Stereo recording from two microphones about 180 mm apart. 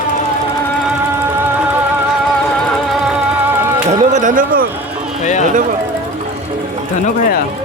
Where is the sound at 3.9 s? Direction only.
45° right (ahead or behind).